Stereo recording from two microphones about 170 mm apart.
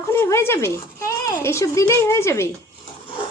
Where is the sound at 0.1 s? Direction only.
15° left (ahead or behind).